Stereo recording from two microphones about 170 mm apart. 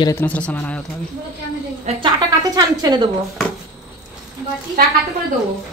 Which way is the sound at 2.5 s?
25° right (ahead or behind).